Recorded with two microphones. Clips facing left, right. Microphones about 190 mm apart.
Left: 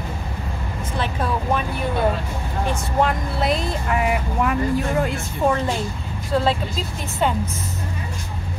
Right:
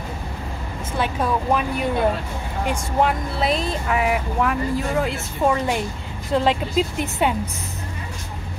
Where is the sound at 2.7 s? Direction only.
5° right (ahead or behind).